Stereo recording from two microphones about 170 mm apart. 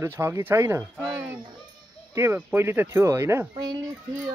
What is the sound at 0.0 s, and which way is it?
Speech, 15° right (ahead or behind).